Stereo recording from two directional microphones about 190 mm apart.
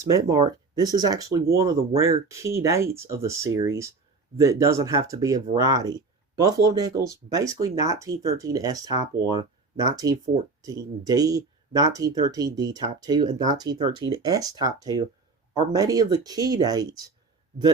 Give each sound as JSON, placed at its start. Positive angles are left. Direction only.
{"t": 0.0, "sound": "speech", "side_deg": -20}